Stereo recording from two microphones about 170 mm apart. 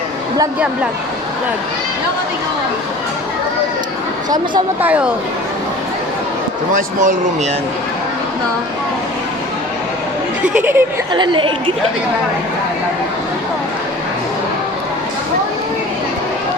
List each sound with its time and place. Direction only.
4.8 s speech: 10° right (ahead or behind)
6.7 s speech: 50° right (ahead or behind)
10.4 s speech: 10° right (ahead or behind)
11.1 s a woman's voice: 30° right (ahead or behind)